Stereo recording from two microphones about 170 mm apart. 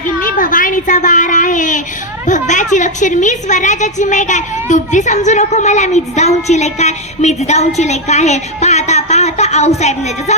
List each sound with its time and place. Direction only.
0.3 s a woman's voice: 50° left (ahead or behind)